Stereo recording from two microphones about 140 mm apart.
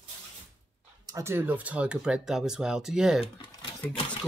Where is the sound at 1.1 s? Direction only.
20° right (ahead or behind); by 3.2 s 5° right (ahead or behind).